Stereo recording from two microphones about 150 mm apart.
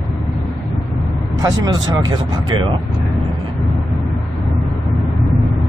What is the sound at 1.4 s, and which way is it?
Speech, 25° right (ahead or behind).